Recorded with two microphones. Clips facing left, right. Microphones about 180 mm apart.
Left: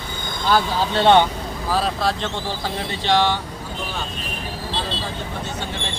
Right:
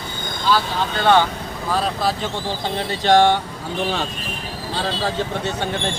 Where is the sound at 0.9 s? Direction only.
25° left (ahead or behind).